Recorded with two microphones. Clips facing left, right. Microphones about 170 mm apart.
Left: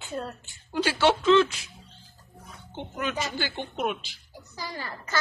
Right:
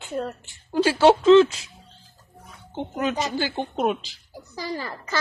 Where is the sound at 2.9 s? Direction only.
35° right (ahead or behind).